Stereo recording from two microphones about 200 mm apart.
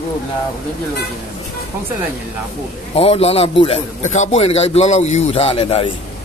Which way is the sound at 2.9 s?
30° left (ahead or behind).